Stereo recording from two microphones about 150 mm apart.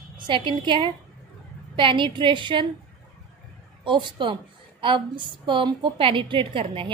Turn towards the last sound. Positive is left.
turn(degrees=-35)  # may be behind; listen again after turning